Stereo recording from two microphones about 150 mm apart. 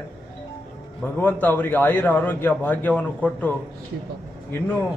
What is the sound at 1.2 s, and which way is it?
A man's voice, 10° left (ahead or behind).